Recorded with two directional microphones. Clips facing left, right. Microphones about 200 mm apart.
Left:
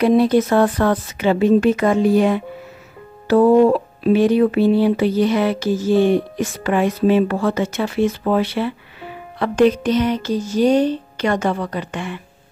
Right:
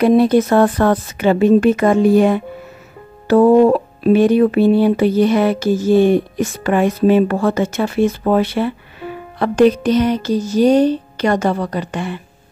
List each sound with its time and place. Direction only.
0.0 s speech: 50° right (ahead or behind)
9.4 s music: 40° right (ahead or behind)